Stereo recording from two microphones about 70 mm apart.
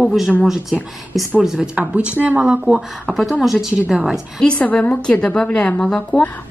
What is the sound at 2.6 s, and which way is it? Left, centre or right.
A woman's voice, centre.